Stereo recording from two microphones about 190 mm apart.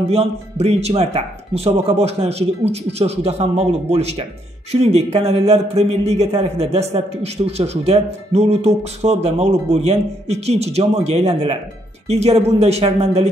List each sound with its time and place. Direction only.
0.1 s a man's voice: 35° right (ahead or behind)